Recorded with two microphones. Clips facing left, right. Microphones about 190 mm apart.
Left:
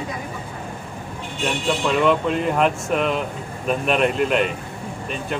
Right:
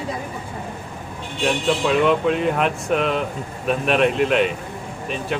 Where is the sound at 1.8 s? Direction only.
Centre (ahead or behind).